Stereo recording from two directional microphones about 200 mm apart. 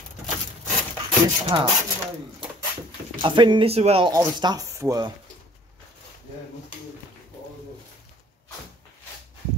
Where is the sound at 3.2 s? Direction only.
25° right (ahead or behind).